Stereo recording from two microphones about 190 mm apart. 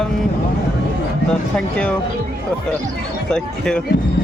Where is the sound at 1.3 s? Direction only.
5° left (ahead or behind).